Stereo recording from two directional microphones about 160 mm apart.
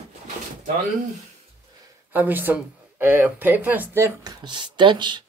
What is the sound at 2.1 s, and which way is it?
Speech, 10° right (ahead or behind).